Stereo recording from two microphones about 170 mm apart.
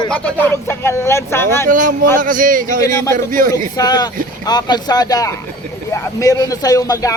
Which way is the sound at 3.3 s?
50° right (ahead or behind).